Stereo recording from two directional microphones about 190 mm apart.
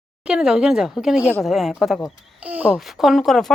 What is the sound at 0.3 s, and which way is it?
A woman's voice, 5° right (ahead or behind).